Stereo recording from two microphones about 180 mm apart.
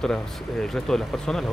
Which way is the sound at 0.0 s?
Centre (ahead or behind).